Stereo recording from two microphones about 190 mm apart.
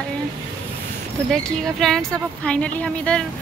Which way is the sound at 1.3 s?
5° left (ahead or behind).